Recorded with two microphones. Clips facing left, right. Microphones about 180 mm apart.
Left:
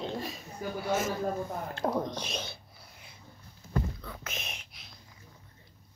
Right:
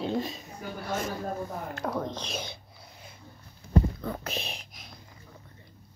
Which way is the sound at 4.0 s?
40° right (ahead or behind).